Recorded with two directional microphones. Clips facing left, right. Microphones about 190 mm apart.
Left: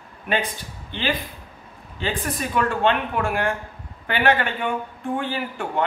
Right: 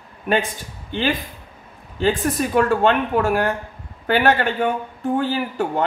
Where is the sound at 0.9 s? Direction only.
45° right (ahead or behind).